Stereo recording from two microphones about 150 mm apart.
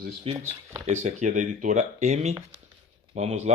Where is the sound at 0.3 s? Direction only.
40° right (ahead or behind).